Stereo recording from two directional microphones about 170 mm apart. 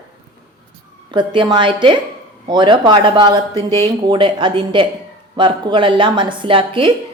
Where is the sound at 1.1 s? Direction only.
25° right (ahead or behind).